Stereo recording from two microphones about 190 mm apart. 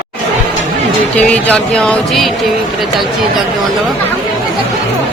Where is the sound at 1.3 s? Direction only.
5° left (ahead or behind).